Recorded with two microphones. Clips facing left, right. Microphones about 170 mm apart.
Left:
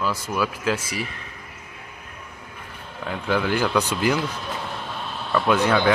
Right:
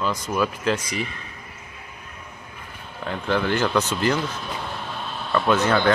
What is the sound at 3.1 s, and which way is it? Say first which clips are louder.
Speech: even; 5° left (ahead or behind).